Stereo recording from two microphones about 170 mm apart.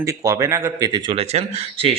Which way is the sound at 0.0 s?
20° right (ahead or behind).